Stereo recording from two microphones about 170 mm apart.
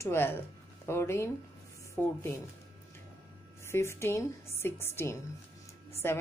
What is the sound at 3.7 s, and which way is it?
A woman's voice, 15° left (ahead or behind).